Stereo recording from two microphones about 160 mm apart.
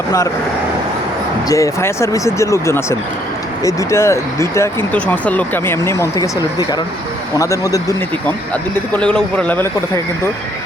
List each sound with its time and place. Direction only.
1.5 s speech: 20° left (ahead or behind)
8.9 s speech: 5° left (ahead or behind)